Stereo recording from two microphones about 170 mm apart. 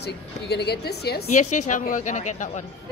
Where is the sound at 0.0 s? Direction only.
75° left (ahead or behind).